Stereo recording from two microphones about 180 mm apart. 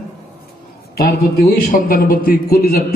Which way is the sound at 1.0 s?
60° left (ahead or behind).